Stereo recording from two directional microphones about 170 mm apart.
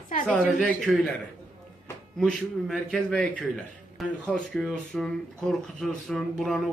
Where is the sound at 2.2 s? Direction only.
Centre (ahead or behind).